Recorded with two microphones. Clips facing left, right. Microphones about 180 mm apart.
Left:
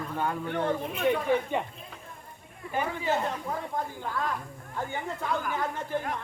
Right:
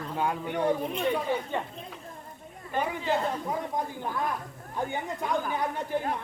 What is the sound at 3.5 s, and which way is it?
Speech, 15° right (ahead or behind).